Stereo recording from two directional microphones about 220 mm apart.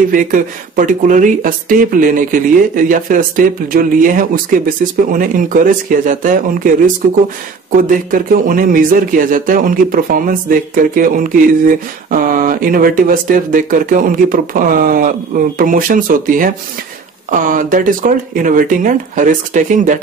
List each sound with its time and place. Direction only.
0.1 s speech: 35° right (ahead or behind)
7.7 s speech: 40° right (ahead or behind)